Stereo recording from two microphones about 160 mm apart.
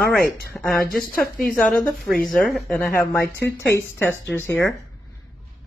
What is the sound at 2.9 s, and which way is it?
Speech, 15° left (ahead or behind).